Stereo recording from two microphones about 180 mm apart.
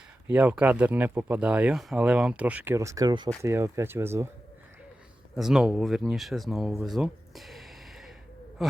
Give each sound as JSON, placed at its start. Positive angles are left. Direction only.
{"t": 0.3, "sound": "speech", "side_deg": -10}
{"t": 5.4, "sound": "speech", "side_deg": -5}